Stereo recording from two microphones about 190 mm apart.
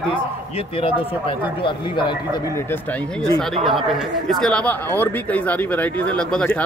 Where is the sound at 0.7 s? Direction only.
30° left (ahead or behind).